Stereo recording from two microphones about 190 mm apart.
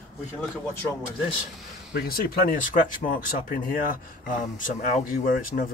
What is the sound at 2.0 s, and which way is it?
Speech, 50° left (ahead or behind).